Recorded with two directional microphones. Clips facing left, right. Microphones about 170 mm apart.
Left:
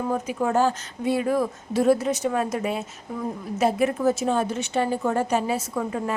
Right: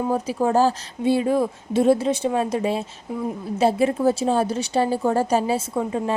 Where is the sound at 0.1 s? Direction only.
35° right (ahead or behind).